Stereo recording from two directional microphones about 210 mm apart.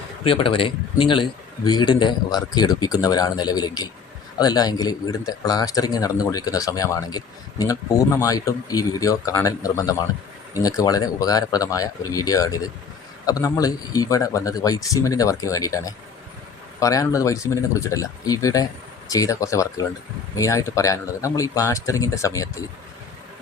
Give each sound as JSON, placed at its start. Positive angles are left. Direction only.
{"t": 0.3, "sound": "a man's voice", "side_deg": 25}